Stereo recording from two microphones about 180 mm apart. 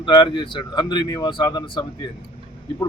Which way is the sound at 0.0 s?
25° left (ahead or behind).